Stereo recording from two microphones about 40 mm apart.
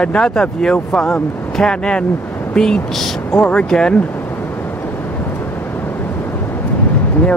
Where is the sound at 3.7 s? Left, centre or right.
Centre.